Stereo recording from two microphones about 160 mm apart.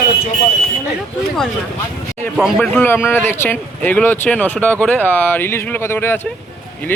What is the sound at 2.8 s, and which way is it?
Speech, 15° left (ahead or behind).